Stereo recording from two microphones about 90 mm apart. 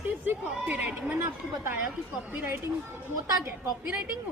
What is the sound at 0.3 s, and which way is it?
Speech, 15° right (ahead or behind).